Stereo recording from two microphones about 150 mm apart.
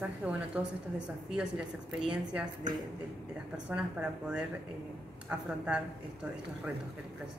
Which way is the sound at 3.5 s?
10° right (ahead or behind).